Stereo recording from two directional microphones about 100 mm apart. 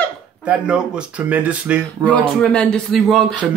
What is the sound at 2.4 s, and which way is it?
Speech, 10° left (ahead or behind).